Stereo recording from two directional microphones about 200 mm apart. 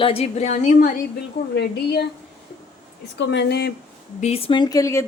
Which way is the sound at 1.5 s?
55° left (ahead or behind).